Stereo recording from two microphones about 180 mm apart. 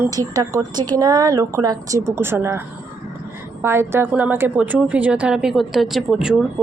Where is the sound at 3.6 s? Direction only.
15° right (ahead or behind).